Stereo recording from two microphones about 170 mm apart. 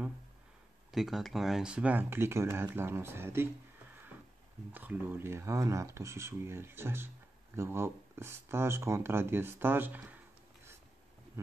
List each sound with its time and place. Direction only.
0.9 s speech: centre (ahead or behind)
4.7 s speech: 10° right (ahead or behind)